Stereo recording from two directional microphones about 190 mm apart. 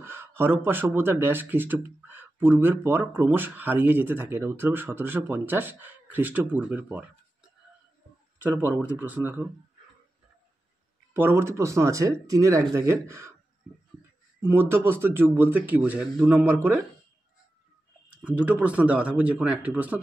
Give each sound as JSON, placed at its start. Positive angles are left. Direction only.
{"t": 0.0, "sound": "speech", "side_deg": -10}
{"t": 8.4, "sound": "speech", "side_deg": -10}
{"t": 11.1, "sound": "speech", "side_deg": -10}
{"t": 14.4, "sound": "speech", "side_deg": -10}
{"t": 18.1, "sound": "speech", "side_deg": -10}